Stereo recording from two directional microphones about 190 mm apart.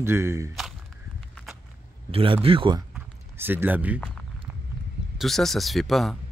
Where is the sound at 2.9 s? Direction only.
10° right (ahead or behind).